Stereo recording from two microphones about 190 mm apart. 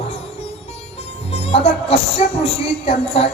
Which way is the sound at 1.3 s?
30° left (ahead or behind).